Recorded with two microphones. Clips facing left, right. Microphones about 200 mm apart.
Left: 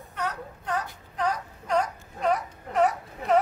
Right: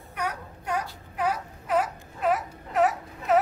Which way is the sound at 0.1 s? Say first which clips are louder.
Even; 10° right (ahead or behind).